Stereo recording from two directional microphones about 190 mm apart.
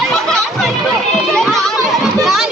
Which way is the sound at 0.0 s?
Centre (ahead or behind).